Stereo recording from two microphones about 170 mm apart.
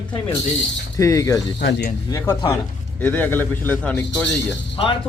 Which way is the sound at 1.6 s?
80° left.